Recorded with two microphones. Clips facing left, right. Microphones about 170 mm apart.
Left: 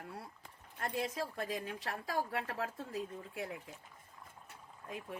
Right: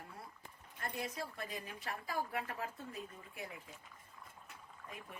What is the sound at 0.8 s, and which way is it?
A woman's voice, 90° left.